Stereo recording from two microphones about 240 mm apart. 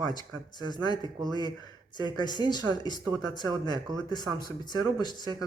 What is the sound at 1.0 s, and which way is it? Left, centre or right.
Speech, centre.